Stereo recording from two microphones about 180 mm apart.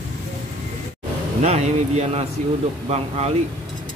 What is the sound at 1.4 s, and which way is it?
Speech, 35° right (ahead or behind).